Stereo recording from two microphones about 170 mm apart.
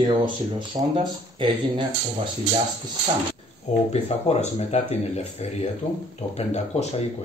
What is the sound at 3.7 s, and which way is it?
Speech, 40° left (ahead or behind).